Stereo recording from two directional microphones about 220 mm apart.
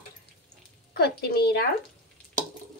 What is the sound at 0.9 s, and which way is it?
Speech, 45° left (ahead or behind).